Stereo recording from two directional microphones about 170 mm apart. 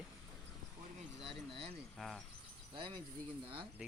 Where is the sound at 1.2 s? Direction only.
35° right (ahead or behind).